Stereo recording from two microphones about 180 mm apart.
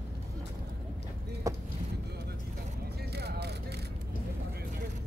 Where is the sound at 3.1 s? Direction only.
65° right (ahead or behind).